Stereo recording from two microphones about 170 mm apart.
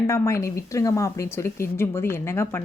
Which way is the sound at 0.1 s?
15° left (ahead or behind).